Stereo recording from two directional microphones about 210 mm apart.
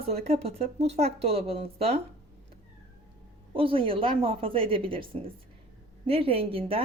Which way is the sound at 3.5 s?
25° right (ahead or behind).